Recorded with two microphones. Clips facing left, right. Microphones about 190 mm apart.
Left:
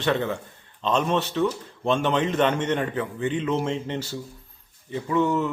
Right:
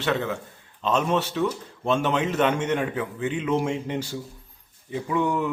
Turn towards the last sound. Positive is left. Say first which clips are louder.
# left 2 dB
turn(degrees=-10)  # may be behind; listen again after turning